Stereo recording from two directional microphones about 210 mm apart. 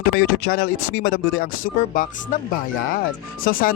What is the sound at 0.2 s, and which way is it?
Speech, 50° left (ahead or behind).